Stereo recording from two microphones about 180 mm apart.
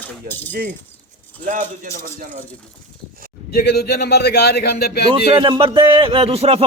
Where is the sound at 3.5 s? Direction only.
60° left (ahead or behind).